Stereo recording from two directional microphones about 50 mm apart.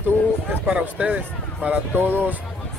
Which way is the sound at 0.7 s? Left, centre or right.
Right.